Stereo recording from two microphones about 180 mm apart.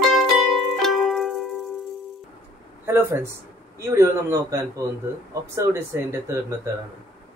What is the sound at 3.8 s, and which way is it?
A man's voice, 15° right (ahead or behind).